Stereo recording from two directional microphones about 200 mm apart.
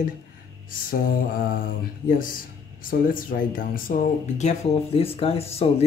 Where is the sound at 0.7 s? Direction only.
45° left (ahead or behind).